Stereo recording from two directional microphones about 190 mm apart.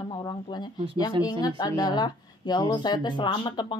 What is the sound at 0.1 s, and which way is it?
Speech, 20° left (ahead or behind).